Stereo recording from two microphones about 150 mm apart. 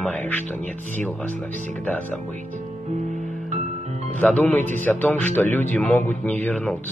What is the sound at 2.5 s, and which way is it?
Music, 50° right (ahead or behind).